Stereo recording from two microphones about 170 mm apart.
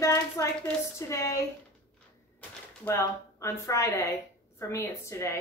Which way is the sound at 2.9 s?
15° left (ahead or behind).